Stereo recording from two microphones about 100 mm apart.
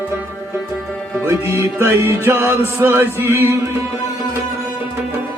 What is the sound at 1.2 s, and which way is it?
Music, 20° right (ahead or behind).